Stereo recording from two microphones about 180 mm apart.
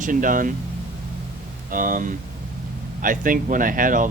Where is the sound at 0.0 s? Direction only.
50° right (ahead or behind).